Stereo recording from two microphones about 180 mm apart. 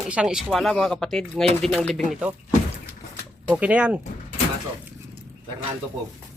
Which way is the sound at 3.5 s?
5° right (ahead or behind).